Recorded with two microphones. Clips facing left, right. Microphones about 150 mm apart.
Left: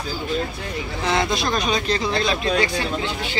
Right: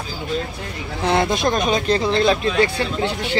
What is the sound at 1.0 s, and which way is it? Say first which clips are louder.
Speech: right 4 dB; 55° right (ahead or behind).